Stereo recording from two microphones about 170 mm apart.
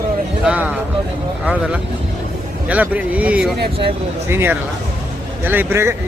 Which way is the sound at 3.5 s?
70° right (ahead or behind).